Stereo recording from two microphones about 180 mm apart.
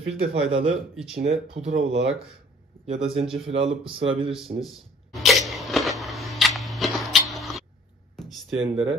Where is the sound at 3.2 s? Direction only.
5° right (ahead or behind).